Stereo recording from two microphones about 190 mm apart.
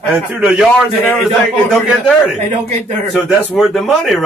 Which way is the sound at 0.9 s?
10° left (ahead or behind).